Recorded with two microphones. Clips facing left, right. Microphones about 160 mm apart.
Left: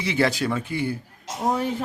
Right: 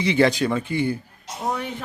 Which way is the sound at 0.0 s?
5° left (ahead or behind).